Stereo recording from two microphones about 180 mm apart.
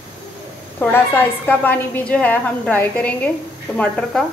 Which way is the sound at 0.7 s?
10° left (ahead or behind).